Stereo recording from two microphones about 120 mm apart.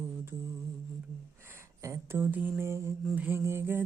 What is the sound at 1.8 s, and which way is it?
Mantra, 20° right (ahead or behind).